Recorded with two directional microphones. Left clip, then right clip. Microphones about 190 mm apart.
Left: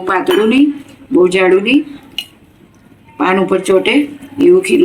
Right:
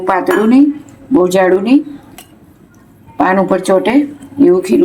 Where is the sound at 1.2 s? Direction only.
45° right (ahead or behind).